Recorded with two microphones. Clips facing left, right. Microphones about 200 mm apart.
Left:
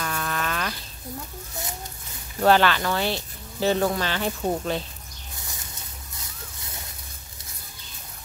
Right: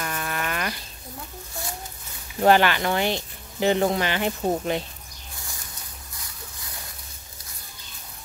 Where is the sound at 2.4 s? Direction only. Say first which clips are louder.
Right 1 dB; 15° right (ahead or behind).